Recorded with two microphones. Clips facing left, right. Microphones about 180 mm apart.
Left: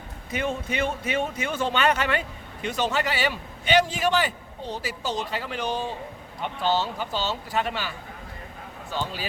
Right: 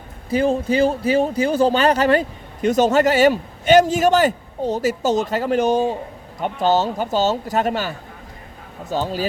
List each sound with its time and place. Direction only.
0.3 s a man's voice: 35° right (ahead or behind)